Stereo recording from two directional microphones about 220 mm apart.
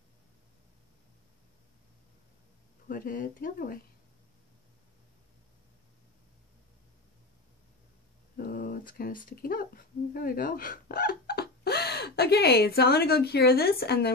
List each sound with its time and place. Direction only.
2.9 s speech: 40° left (ahead or behind)
8.4 s speech: 40° left (ahead or behind)